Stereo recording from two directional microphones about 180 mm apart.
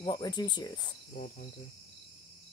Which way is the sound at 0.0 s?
20° left (ahead or behind).